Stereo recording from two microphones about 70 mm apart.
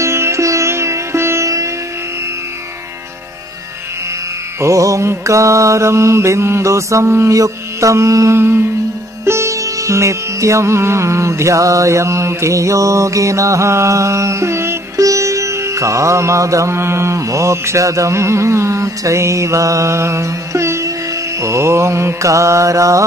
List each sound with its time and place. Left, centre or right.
0.0 s music: right
4.6 s music: right
8.4 s music: right
15.0 s music: right